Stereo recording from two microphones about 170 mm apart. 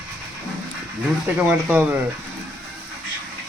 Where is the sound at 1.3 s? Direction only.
10° right (ahead or behind).